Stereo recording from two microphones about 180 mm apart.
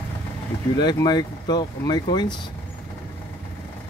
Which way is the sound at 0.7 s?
25° left (ahead or behind).